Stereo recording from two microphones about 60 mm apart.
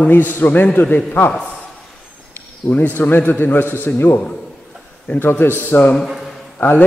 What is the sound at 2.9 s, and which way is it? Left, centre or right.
A man's voice, left.